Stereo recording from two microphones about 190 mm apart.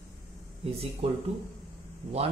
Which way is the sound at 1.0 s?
35° right (ahead or behind).